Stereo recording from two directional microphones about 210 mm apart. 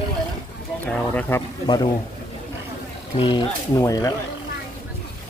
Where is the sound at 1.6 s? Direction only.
20° left (ahead or behind).